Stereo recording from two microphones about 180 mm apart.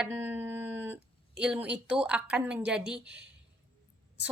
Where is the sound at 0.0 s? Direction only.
10° right (ahead or behind).